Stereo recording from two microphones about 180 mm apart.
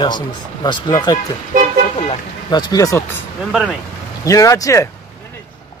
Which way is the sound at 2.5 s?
20° left (ahead or behind).